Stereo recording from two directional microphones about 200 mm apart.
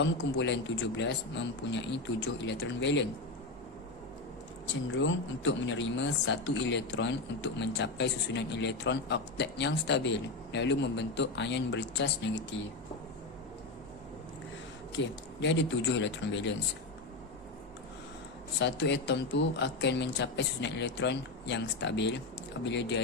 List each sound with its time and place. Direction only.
0.0 s speech: 65° left (ahead or behind)
4.9 s speech: 70° left (ahead or behind)
14.9 s speech: 65° left (ahead or behind)
18.6 s speech: 60° left (ahead or behind)